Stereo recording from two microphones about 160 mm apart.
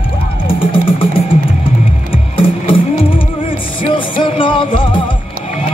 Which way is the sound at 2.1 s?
35° left (ahead or behind).